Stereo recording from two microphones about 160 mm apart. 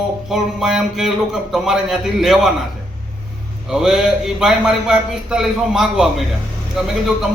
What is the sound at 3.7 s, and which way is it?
A man's voice, 5° right (ahead or behind).